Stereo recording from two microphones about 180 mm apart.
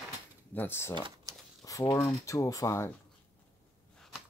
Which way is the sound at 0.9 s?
25° right (ahead or behind).